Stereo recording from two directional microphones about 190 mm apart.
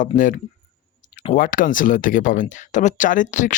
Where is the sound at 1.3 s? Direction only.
45° left (ahead or behind).